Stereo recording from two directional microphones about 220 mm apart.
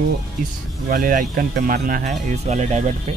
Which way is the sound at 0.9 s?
40° right (ahead or behind).